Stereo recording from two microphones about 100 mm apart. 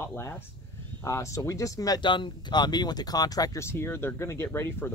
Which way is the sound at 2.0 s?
50° left (ahead or behind).